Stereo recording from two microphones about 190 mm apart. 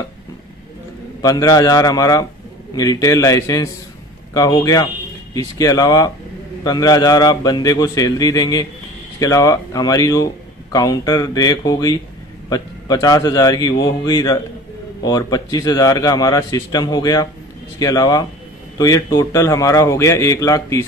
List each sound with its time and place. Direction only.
1.2 s a man's voice: 20° left (ahead or behind)